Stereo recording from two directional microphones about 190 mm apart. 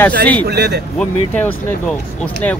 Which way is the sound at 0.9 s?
10° left (ahead or behind).